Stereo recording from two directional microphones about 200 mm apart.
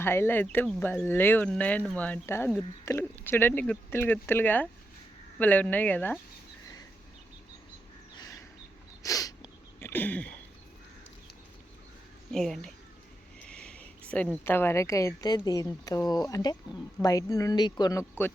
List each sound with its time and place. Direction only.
0.0 s speech: 10° left (ahead or behind)
9.0 s sneeze: 15° left (ahead or behind)
12.3 s speech: centre (ahead or behind)
13.4 s a sound: 5° left (ahead or behind)
14.1 s speech: 5° left (ahead or behind)